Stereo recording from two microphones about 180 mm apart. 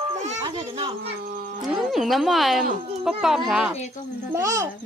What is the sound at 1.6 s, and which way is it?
Speech, centre (ahead or behind).